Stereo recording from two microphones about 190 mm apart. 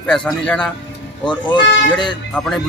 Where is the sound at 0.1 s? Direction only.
5° left (ahead or behind).